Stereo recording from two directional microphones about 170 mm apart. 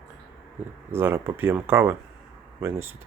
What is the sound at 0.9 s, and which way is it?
Speech, 15° right (ahead or behind).